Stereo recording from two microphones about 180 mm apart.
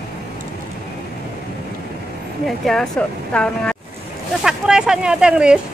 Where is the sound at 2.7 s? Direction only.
5° left (ahead or behind).